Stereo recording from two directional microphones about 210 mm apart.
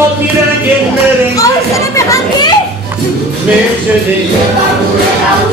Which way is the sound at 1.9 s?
15° left (ahead or behind).